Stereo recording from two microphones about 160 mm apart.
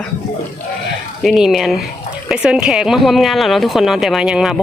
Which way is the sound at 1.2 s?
Centre (ahead or behind).